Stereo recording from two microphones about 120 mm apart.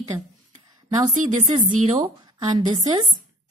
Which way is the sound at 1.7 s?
80° right.